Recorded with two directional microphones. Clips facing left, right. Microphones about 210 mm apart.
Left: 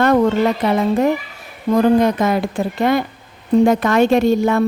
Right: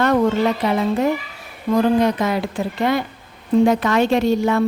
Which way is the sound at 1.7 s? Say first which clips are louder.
Left 3 dB; 50° left (ahead or behind).